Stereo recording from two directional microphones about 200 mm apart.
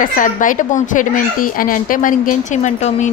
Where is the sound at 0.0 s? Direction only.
40° left (ahead or behind).